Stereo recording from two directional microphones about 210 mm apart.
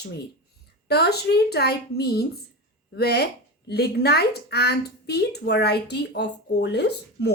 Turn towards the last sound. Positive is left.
turn(degrees=50)  # may be behind; listen again after turning